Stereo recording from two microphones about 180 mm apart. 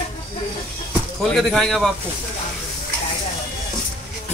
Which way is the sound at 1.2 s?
Centre (ahead or behind).